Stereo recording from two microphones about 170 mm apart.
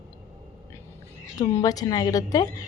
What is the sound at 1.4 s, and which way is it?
A woman's voice, 20° left (ahead or behind).